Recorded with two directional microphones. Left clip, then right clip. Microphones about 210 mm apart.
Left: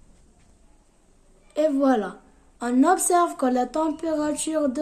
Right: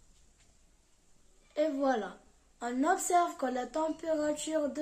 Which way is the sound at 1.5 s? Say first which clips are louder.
Left 9 dB; 45° left (ahead or behind).